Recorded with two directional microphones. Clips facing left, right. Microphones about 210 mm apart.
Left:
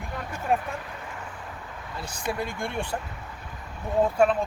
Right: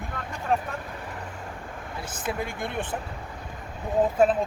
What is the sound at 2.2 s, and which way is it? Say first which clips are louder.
Speech: left 1 dB; 15° right (ahead or behind).